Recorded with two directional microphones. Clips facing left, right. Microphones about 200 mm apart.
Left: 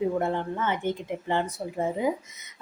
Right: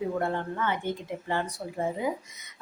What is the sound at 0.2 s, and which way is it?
A woman's voice, 20° left (ahead or behind).